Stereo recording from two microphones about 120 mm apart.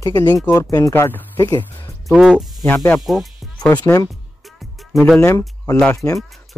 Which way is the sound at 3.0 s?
Centre (ahead or behind).